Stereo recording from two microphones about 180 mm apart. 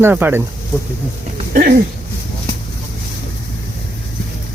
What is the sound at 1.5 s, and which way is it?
Speech, 55° right (ahead or behind).